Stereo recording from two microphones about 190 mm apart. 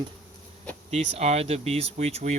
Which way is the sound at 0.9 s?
35° right (ahead or behind).